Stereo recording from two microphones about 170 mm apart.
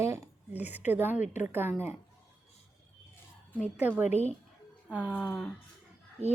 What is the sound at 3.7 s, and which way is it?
Speech, 10° right (ahead or behind).